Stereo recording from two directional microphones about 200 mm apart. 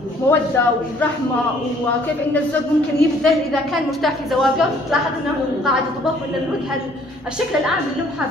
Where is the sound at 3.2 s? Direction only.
Centre (ahead or behind).